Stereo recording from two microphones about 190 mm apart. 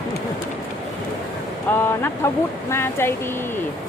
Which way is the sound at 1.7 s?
10° left (ahead or behind).